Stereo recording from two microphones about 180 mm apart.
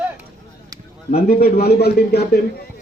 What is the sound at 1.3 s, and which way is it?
Speech, 55° left (ahead or behind).